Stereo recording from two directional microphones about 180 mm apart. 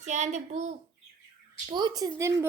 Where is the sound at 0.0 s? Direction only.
40° right (ahead or behind).